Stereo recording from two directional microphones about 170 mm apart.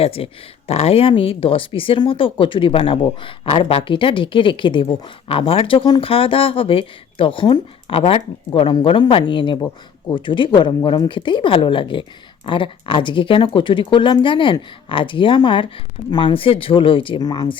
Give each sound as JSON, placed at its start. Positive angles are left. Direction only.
{"t": 0.0, "sound": "speech", "side_deg": 35}